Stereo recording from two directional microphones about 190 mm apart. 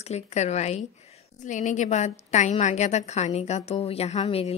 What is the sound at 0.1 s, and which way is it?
A woman's voice, 35° left (ahead or behind).